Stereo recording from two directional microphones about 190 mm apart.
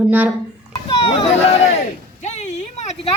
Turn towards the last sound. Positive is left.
turn(degrees=35)  # may be behind; listen again after turning